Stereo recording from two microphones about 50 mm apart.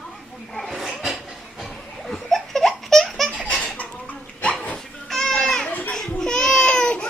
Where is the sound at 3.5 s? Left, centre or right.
Left.